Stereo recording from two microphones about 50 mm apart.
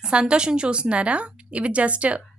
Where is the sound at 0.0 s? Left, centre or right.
Centre.